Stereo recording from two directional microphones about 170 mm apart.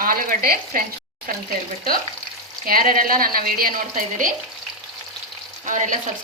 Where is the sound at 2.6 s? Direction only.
55° right (ahead or behind).